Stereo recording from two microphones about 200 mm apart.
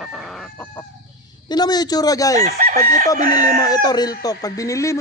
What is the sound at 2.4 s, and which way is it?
Chicken, 40° right (ahead or behind).